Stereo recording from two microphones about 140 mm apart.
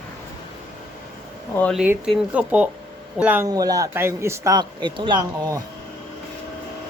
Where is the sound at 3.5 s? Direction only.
25° right (ahead or behind).